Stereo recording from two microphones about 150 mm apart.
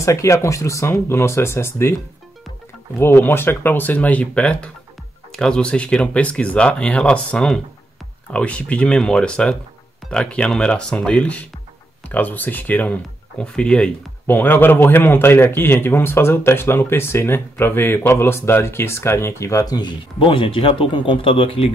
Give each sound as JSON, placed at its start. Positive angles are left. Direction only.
{"t": 0.0, "sound": "speech", "side_deg": 20}
{"t": 3.0, "sound": "speech", "side_deg": 15}